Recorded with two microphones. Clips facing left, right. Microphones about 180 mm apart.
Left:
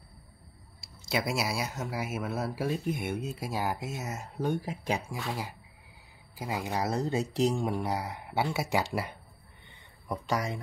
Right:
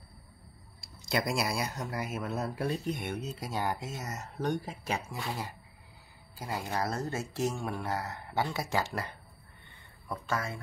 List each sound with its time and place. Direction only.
0.7 s speech: 5° left (ahead or behind)
6.3 s speech: 15° left (ahead or behind)